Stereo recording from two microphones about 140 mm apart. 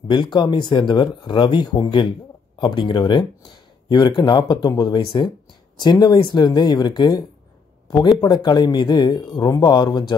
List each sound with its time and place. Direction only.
0.1 s speech: 35° left (ahead or behind)